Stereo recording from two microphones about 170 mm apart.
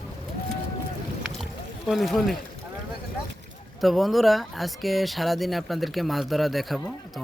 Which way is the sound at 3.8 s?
Centre (ahead or behind).